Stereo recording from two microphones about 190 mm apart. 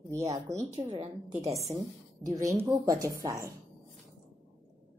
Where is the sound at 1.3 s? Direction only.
15° right (ahead or behind).